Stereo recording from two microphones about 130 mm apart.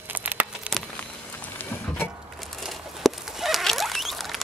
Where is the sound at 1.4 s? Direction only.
10° left (ahead or behind).